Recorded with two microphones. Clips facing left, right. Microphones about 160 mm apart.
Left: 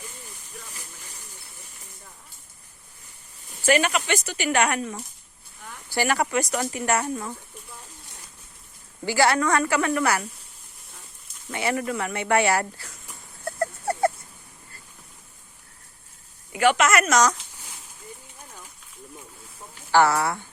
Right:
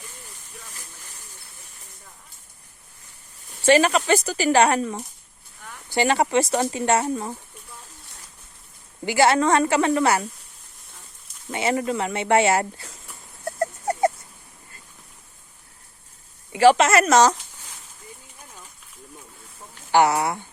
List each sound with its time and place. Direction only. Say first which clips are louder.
3.7 s speech: right 5 dB; 35° right (ahead or behind)
9.0 s speech: right 3 dB; 20° right (ahead or behind)
11.5 s speech: right 3 dB; 25° right (ahead or behind)
13.4 s a sound: right 2 dB; 20° right (ahead or behind)
16.5 s speech: right 5 dB; 30° right (ahead or behind)
19.9 s speech: right 1 dB; 20° right (ahead or behind)